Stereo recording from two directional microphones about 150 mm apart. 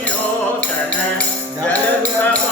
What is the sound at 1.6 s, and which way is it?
Music, 10° left (ahead or behind).